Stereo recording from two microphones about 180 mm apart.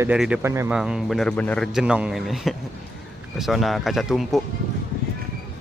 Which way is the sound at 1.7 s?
5° right (ahead or behind).